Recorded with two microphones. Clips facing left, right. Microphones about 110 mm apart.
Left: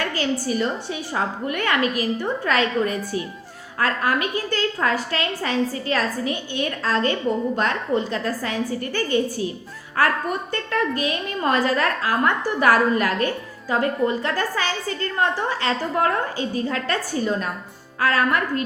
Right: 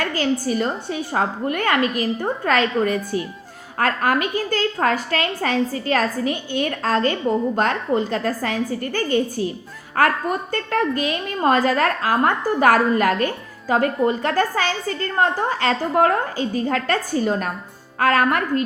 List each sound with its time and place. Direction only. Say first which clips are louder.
0.1 s a woman's voice: right 2 dB; 45° right (ahead or behind)